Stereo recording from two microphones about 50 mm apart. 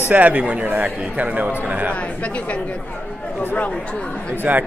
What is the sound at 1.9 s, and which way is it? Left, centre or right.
A woman's voice, left.